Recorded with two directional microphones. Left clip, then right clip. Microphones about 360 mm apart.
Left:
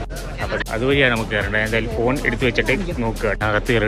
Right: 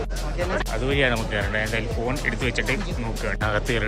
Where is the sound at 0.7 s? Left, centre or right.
Centre.